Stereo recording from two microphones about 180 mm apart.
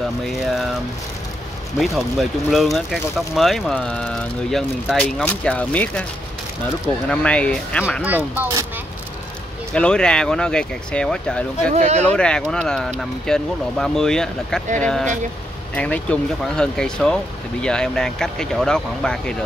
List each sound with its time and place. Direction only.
0.3 s a sound: centre (ahead or behind)
1.8 s speech: centre (ahead or behind)
7.1 s speech: 5° left (ahead or behind)
8.0 s speech: 10° right (ahead or behind)
9.8 s speech: 5° left (ahead or behind)
11.7 s speech: 40° right (ahead or behind)
12.0 s speech: 5° left (ahead or behind)